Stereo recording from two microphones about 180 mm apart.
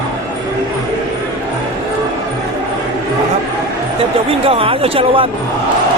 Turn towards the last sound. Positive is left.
turn(degrees=-30)  # may be behind; listen again after turning